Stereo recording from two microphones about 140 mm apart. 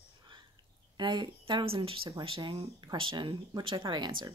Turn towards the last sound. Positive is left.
turn(degrees=-35)  # may be behind; listen again after turning